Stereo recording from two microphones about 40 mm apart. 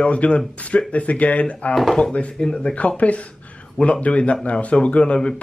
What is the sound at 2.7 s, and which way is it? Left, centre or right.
Speech, left.